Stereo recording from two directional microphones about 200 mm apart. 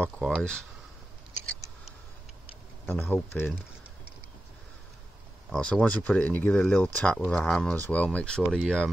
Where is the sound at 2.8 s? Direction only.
10° left (ahead or behind).